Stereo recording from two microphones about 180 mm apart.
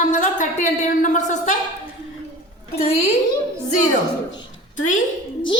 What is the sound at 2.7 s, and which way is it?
Speech, 35° left (ahead or behind).